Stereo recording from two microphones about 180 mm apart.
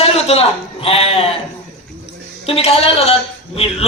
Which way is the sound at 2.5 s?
35° left (ahead or behind).